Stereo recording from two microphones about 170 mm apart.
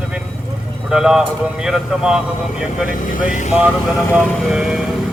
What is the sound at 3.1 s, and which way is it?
Speech, 50° left (ahead or behind).